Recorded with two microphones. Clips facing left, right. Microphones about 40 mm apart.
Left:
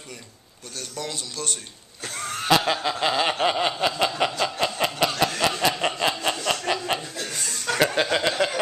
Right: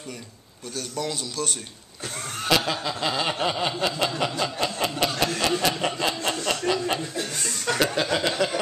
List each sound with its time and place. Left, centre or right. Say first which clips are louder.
0.7 s a man's voice: right 3 dB; centre
2.6 s snicker: left 3 dB; centre
4.4 s chuckle: left 2 dB; centre
5.2 s a sound: left 1 dB; centre
5.7 s chuckle: left 1 dB; centre
7.7 s speech: left 2 dB; centre